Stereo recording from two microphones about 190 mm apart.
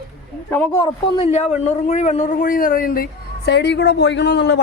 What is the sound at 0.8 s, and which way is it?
Speech, 25° left (ahead or behind).